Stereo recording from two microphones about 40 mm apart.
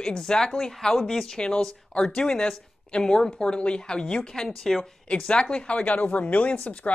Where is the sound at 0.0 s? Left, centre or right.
Centre.